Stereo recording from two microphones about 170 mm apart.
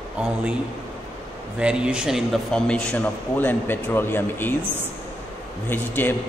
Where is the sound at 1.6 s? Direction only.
5° right (ahead or behind); by 4.6 s 10° left (ahead or behind).